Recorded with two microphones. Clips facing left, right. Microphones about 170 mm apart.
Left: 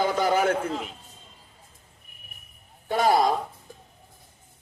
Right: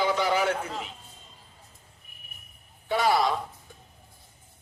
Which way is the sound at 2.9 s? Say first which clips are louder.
Left 3 dB; 45° left (ahead or behind).